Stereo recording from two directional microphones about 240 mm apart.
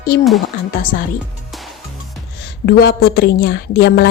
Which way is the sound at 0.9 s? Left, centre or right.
Left.